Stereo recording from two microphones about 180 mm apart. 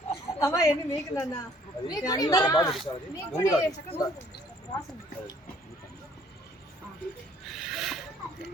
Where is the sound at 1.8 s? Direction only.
20° left (ahead or behind).